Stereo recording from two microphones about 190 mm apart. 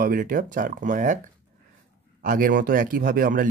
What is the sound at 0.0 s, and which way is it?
Speech, 45° right (ahead or behind).